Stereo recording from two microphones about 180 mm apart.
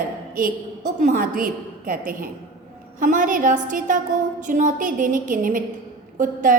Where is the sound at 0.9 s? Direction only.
50° right (ahead or behind).